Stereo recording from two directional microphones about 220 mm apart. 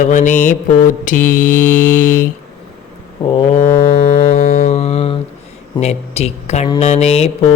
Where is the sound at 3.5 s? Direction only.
40° left (ahead or behind).